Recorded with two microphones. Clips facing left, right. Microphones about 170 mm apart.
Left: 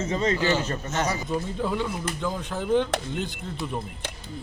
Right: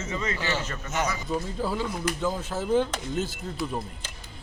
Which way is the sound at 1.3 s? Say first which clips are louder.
Left 2 dB; 5° right (ahead or behind).